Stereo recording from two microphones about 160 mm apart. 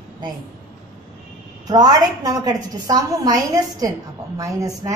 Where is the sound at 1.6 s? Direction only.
25° right (ahead or behind).